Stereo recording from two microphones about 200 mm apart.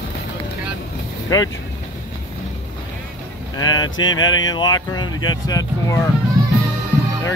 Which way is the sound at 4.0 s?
90° left.